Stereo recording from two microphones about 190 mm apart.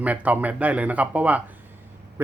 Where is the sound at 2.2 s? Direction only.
10° right (ahead or behind).